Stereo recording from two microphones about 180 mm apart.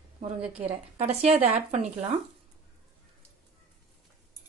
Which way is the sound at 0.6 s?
35° right (ahead or behind).